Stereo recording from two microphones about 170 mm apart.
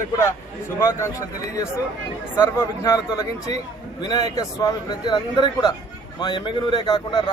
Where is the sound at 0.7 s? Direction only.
15° left (ahead or behind).